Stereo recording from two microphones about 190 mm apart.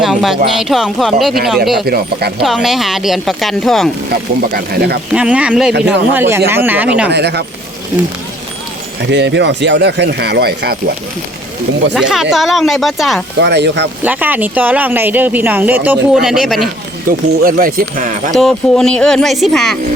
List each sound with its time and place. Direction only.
0.0 s music: centre (ahead or behind)
0.6 s speech: centre (ahead or behind)
4.4 s speech: 55° right (ahead or behind)
5.1 s speech: 5° right (ahead or behind)
7.1 s speech: 60° right (ahead or behind)
9.0 s speech: 65° right (ahead or behind)
11.9 s speech: 5° right (ahead or behind)
13.4 s speech: 65° right (ahead or behind)
14.0 s speech: 10° right (ahead or behind)
17.1 s speech: 50° right (ahead or behind)
18.3 s speech: centre (ahead or behind)